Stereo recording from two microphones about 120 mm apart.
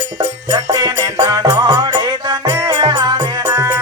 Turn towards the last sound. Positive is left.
turn(degrees=-25)  # may be behind; listen again after turning